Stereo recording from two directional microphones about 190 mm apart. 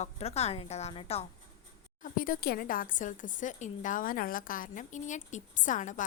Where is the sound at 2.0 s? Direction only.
45° left (ahead or behind).